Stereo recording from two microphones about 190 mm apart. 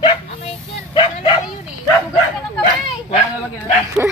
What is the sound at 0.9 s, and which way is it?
Bow-wow, 25° left (ahead or behind).